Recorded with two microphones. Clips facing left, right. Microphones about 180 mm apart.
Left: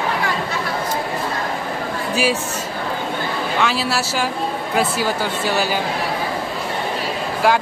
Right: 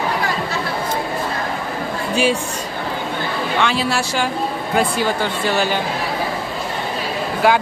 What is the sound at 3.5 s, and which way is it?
Speech, 5° left (ahead or behind).